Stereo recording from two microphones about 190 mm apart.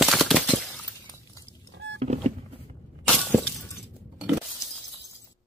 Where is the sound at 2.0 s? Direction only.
35° right (ahead or behind).